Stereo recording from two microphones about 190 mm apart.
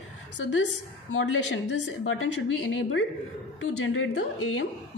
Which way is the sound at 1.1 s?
90° left.